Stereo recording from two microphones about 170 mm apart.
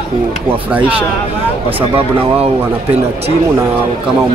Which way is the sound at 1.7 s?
30° right (ahead or behind).